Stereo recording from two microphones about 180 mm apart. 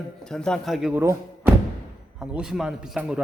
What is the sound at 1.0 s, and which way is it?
A man's voice, 15° right (ahead or behind).